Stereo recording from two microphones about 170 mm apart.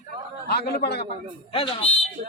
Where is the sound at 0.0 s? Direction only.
70° left (ahead or behind).